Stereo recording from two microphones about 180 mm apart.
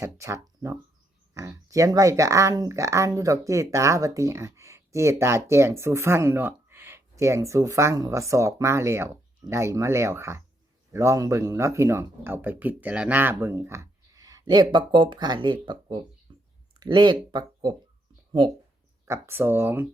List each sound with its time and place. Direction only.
0.0 s speech: 15° right (ahead or behind)
19.0 s speech: 15° right (ahead or behind)